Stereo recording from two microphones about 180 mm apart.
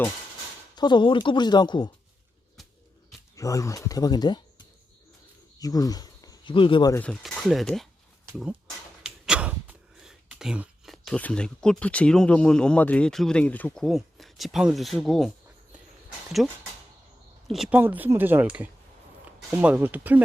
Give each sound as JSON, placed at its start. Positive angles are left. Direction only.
{"t": 0.8, "sound": "speech", "side_deg": 25}
{"t": 3.3, "sound": "speech", "side_deg": 20}
{"t": 7.0, "sound": "speech", "side_deg": 5}
{"t": 9.0, "sound": "speech", "side_deg": -5}
{"t": 16.4, "sound": "speech", "side_deg": 0}